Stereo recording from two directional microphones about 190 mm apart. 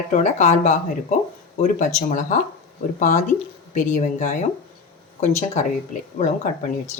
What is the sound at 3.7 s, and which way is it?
Speech, 40° left (ahead or behind).